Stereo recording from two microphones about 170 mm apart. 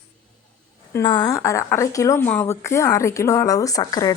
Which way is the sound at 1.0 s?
25° left (ahead or behind).